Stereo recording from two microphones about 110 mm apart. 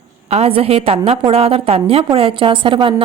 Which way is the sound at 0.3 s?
70° right (ahead or behind).